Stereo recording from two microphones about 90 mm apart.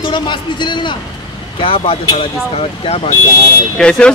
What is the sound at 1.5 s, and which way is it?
Speech, 90° left.